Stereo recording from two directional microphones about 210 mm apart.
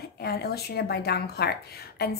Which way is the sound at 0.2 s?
50° left (ahead or behind).